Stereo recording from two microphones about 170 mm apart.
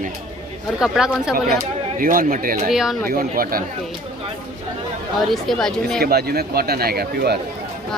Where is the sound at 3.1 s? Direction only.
55° right (ahead or behind).